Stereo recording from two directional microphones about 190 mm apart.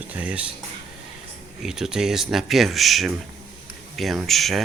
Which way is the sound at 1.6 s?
Centre (ahead or behind).